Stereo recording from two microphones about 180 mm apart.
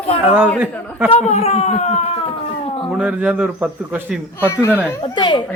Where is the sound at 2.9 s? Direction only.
5° right (ahead or behind).